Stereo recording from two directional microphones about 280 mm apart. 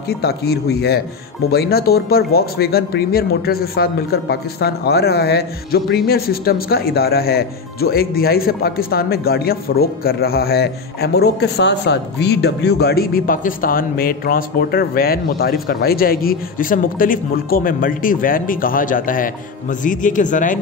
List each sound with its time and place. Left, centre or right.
0.2 s a man's voice: left